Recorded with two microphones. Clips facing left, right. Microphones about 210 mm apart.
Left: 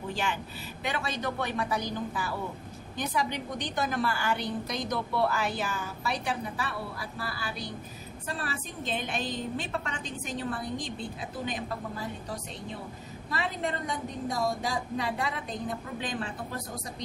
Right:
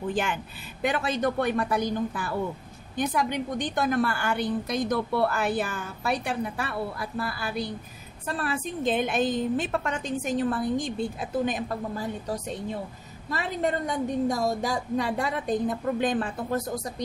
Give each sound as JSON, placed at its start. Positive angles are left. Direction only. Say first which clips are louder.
{"t": 0.1, "sound": "a woman's voice", "louder": "right 4 dB", "side_deg": -50}
{"t": 13.3, "sound": "a woman's voice", "louder": "right 5 dB", "side_deg": -45}